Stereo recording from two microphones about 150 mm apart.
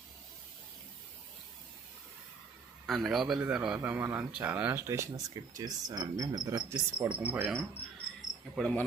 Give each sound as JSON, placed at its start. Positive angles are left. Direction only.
{"t": 2.8, "sound": "a man's voice", "side_deg": 0}
{"t": 7.2, "sound": "a man's voice", "side_deg": -10}
{"t": 8.5, "sound": "cricket", "side_deg": 5}